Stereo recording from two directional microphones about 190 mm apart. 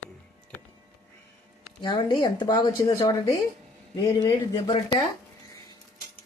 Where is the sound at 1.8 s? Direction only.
25° left (ahead or behind).